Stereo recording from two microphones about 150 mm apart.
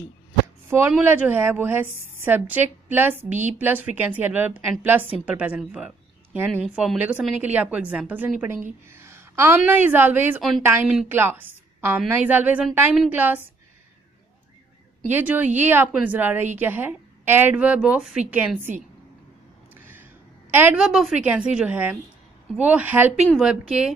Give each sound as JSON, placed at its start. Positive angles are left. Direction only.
{"t": 0.7, "sound": "a woman's voice", "side_deg": -15}
{"t": 15.0, "sound": "speech", "side_deg": -10}
{"t": 19.7, "sound": "a sound", "side_deg": -15}
{"t": 20.5, "sound": "speech", "side_deg": -10}
{"t": 23.2, "sound": "a woman's voice", "side_deg": 0}